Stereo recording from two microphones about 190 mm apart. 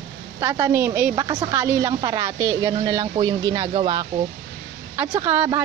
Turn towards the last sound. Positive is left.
turn(degrees=-10)  # may be behind; listen again after turning